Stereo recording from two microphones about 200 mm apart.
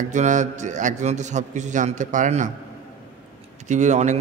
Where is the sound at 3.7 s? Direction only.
35° right (ahead or behind).